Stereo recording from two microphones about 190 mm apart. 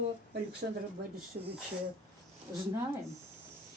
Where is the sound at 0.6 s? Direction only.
50° right (ahead or behind).